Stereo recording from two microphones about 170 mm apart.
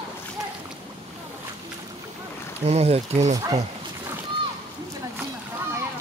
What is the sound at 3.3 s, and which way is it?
Speech, 20° right (ahead or behind).